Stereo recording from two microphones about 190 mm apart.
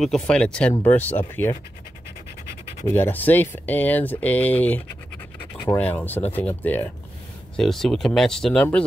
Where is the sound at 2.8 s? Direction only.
10° left (ahead or behind).